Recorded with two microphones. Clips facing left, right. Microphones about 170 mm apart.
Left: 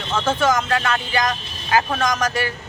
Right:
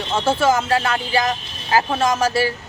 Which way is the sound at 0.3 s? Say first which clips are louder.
Right 2 dB; 10° right (ahead or behind).